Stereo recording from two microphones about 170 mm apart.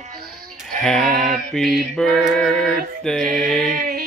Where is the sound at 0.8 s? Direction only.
Centre (ahead or behind).